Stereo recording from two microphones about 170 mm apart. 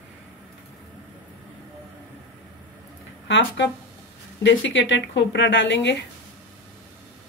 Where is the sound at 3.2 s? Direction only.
90° left.